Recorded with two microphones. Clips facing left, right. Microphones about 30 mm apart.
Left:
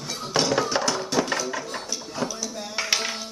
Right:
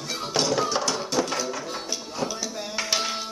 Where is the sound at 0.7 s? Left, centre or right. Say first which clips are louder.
Left 1 dB; centre.